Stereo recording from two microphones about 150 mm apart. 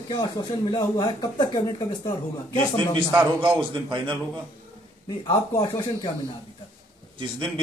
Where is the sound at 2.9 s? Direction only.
35° right (ahead or behind).